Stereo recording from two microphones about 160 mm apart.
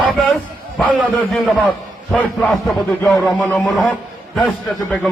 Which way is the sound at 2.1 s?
5° left (ahead or behind).